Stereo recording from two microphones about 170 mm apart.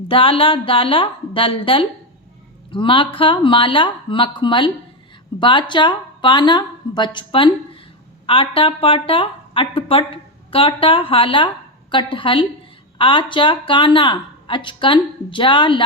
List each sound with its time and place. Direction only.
0.1 s a woman's voice: 30° left (ahead or behind)